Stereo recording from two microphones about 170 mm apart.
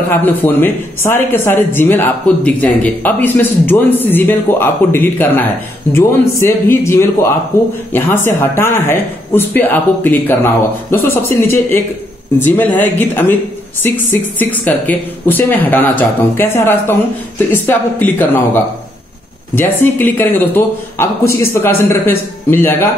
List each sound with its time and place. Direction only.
0.1 s speech: 10° left (ahead or behind)
14.4 s speech: 10° left (ahead or behind)